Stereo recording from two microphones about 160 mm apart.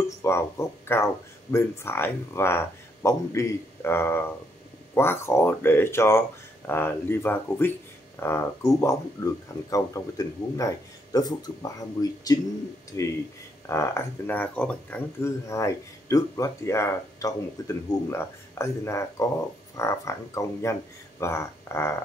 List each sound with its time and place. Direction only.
0.2 s speech: 15° left (ahead or behind)